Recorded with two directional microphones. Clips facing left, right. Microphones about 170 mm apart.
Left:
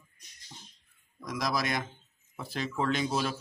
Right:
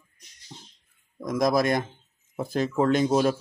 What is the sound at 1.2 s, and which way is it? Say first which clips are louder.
Speech: right 9 dB; 50° right (ahead or behind).